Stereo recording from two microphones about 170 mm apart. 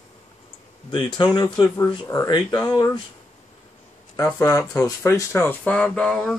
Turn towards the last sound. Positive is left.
turn(degrees=5)  # may be behind; listen again after turning